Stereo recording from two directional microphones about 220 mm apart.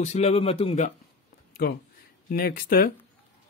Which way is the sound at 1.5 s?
45° left (ahead or behind).